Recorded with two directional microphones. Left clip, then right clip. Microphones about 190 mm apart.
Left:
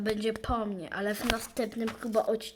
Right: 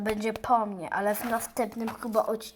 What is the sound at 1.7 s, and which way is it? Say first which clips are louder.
Speech: right 1 dB; 15° left (ahead or behind).